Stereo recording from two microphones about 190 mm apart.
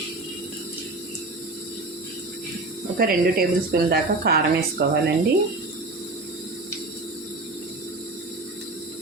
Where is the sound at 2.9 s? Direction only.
50° right (ahead or behind).